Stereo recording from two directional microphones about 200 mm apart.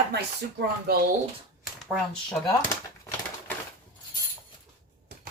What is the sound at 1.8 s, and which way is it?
Speech, centre (ahead or behind).